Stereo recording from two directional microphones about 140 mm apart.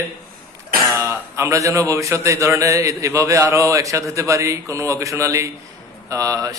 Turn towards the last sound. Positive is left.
turn(degrees=-25)  # may be behind; listen again after turning